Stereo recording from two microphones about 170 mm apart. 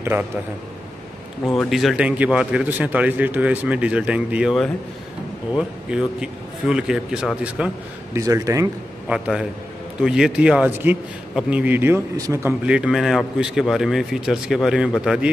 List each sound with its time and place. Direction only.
1.5 s a man's voice: centre (ahead or behind)
8.2 s speech: 20° right (ahead or behind)
9.1 s a man's voice: 5° right (ahead or behind)